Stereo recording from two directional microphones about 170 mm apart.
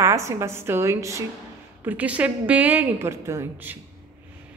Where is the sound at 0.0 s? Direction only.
15° right (ahead or behind).